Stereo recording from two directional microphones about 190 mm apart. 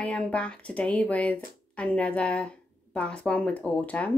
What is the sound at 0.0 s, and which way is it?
Speech, 5° left (ahead or behind).